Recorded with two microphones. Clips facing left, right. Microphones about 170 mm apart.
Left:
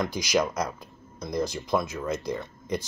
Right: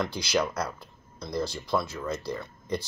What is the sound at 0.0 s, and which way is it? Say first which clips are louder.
Speech: left 2 dB; 15° left (ahead or behind).